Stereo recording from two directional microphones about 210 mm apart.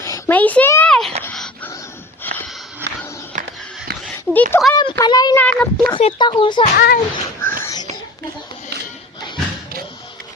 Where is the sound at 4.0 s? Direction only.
Centre (ahead or behind).